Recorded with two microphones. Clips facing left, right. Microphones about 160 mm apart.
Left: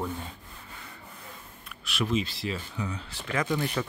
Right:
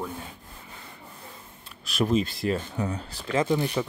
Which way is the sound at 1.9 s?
40° right (ahead or behind).